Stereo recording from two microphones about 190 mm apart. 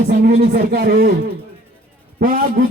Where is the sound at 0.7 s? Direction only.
55° right (ahead or behind).